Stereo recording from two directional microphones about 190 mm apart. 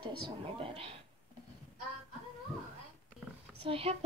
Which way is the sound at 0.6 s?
30° right (ahead or behind).